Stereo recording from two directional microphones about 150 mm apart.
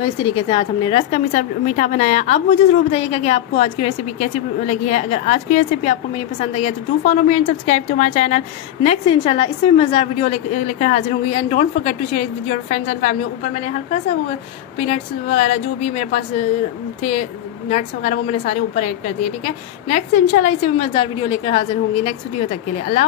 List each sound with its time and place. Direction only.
0.0 s a woman's voice: 35° left (ahead or behind)
1.1 s a woman's voice: 55° left (ahead or behind)
9.0 s a woman's voice: 35° left (ahead or behind)
14.9 s a woman's voice: 50° left (ahead or behind); by 20.7 s 65° left (ahead or behind)
20.8 s a woman's voice: 35° left (ahead or behind)